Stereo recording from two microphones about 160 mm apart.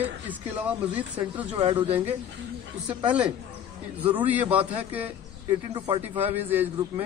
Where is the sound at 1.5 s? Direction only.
35° right (ahead or behind).